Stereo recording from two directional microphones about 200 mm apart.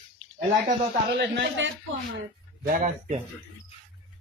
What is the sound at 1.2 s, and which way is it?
Speech, 65° right (ahead or behind).